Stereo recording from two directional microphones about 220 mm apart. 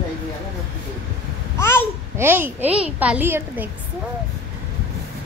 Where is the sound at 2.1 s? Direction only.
10° right (ahead or behind).